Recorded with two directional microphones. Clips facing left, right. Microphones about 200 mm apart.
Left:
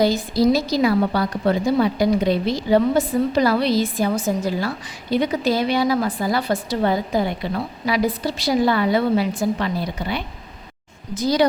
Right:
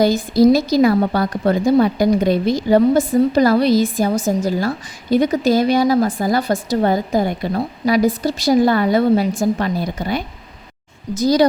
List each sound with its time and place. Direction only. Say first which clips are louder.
0.0 s a woman's voice: right 4 dB; 50° right (ahead or behind)